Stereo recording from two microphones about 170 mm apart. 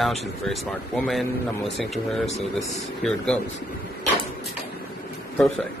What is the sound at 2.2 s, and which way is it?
Speech, 40° left (ahead or behind).